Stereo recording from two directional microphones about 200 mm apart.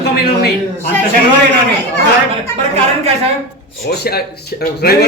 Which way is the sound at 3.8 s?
50° left (ahead or behind).